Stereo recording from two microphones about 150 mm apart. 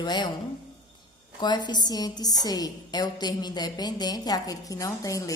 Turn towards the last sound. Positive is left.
turn(degrees=20)  # may be behind; listen again after turning